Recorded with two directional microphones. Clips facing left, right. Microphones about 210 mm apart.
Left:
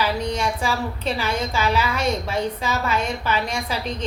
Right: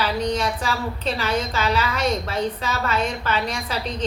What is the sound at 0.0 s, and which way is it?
A woman's voice, 10° left (ahead or behind).